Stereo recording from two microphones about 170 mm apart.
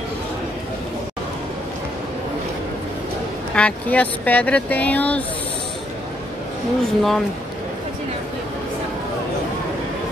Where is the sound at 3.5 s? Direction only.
5° left (ahead or behind).